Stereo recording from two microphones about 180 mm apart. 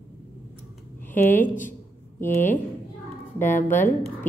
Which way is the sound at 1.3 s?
45° left (ahead or behind).